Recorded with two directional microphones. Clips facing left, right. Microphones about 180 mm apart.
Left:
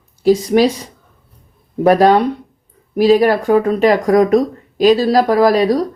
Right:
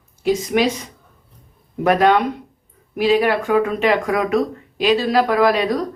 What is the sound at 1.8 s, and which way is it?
Speech, 35° left (ahead or behind).